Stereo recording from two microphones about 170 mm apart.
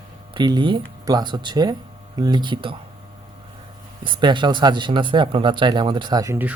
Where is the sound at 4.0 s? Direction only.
30° right (ahead or behind).